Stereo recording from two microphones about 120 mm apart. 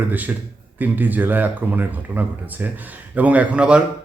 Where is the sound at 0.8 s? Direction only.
15° right (ahead or behind).